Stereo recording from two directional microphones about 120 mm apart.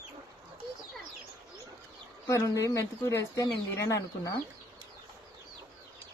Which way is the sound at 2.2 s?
25° left (ahead or behind).